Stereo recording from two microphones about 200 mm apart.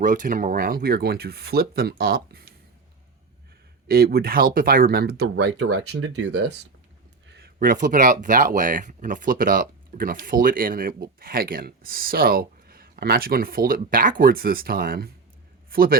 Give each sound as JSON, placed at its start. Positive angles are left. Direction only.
{"t": 0.0, "sound": "speech", "side_deg": -40}
{"t": 3.8, "sound": "a man's voice", "side_deg": -50}